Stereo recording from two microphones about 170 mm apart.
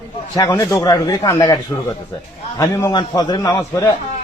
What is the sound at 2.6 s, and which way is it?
A man's voice, 20° left (ahead or behind).